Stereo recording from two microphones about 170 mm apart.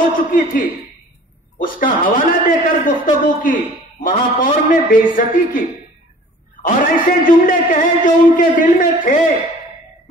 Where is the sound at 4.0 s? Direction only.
55° left (ahead or behind).